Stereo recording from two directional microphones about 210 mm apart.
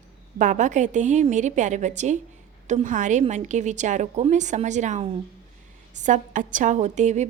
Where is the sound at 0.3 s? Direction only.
35° right (ahead or behind).